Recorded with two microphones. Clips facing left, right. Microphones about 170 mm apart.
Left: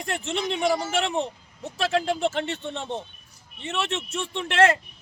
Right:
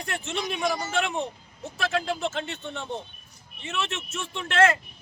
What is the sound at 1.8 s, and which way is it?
Speech, 35° left (ahead or behind).